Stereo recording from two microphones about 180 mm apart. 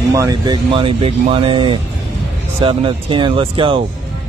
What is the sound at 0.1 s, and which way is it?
Speech, 20° right (ahead or behind).